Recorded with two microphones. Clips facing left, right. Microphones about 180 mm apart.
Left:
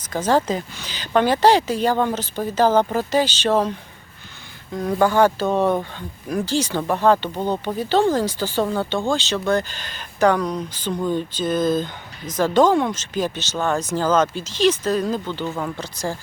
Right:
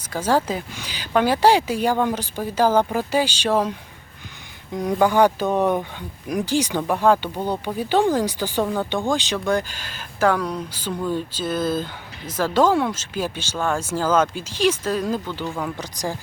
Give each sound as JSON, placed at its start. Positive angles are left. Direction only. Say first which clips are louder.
{"t": 0.1, "sound": "speech", "louder": "left 2 dB", "side_deg": -10}
{"t": 15.4, "sound": "speech", "louder": "even", "side_deg": 5}
{"t": 15.8, "sound": "speech", "louder": "left 1 dB", "side_deg": -15}